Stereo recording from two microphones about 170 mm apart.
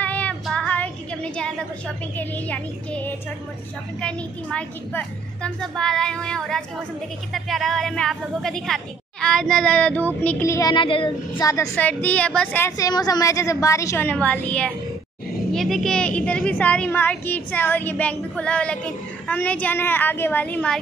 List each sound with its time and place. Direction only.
0.0 s child singing: 10° left (ahead or behind)
2.1 s a woman's voice: 10° left (ahead or behind)
11.7 s a woman's voice: 10° left (ahead or behind)